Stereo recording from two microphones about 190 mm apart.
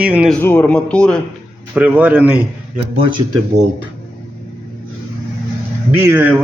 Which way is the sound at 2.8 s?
30° right (ahead or behind).